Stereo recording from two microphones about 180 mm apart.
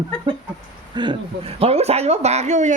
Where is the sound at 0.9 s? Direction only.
25° right (ahead or behind); by 2.7 s 40° right (ahead or behind).